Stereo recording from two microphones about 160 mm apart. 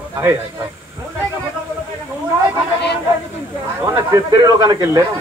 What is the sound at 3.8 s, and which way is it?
Speech, 15° right (ahead or behind).